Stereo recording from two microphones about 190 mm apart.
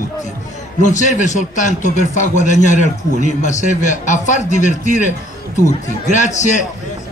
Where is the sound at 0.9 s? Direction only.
40° left (ahead or behind).